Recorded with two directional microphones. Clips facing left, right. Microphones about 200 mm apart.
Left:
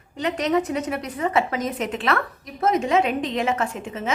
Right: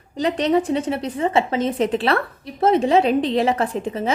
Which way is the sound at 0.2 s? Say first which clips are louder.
Right 3 dB; 30° right (ahead or behind).